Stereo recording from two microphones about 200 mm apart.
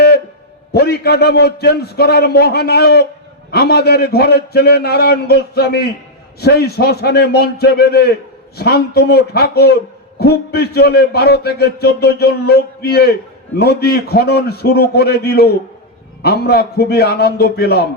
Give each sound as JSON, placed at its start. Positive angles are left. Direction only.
{"t": 0.7, "sound": "a man's voice", "side_deg": 50}